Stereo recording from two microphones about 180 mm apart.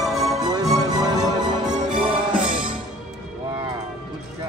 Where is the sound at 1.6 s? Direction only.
45° right (ahead or behind).